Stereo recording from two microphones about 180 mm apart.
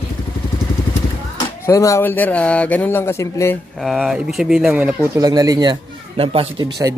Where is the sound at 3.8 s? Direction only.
Centre (ahead or behind).